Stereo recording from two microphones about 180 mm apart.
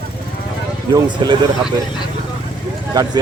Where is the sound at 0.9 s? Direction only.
25° right (ahead or behind).